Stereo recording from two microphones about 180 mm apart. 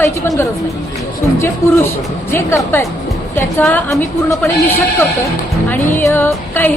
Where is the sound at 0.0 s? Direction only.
15° left (ahead or behind).